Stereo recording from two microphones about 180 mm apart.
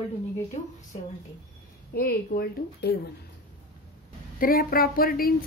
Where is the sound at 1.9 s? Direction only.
55° left (ahead or behind).